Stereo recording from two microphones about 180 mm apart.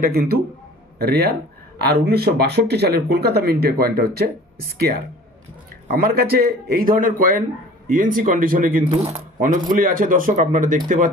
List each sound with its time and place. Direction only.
0.0 s a man's voice: 55° right (ahead or behind)
8.9 s speech: 35° right (ahead or behind)
9.4 s a man's voice: 50° right (ahead or behind)